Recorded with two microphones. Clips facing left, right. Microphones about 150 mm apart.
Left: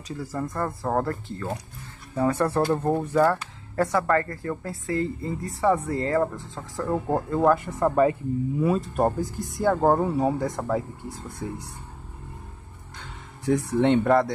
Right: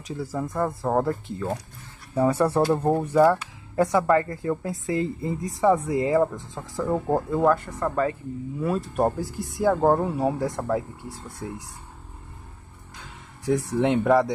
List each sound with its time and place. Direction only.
0.2 s speech: 10° right (ahead or behind)
6.8 s speech: 5° right (ahead or behind)
7.5 s speech: 15° left (ahead or behind)
8.6 s speech: centre (ahead or behind)
13.0 s speech: 5° right (ahead or behind)